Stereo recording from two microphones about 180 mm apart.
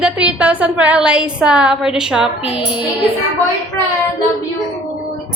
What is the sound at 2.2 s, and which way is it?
Music, 30° left (ahead or behind).